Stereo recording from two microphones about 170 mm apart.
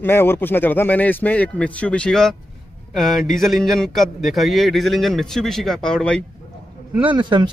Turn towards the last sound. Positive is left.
turn(degrees=-25)  # may be behind; listen again after turning